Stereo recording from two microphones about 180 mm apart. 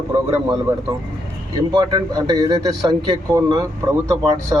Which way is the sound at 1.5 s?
25° right (ahead or behind).